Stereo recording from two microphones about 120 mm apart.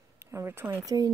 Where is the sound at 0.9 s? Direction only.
30° right (ahead or behind).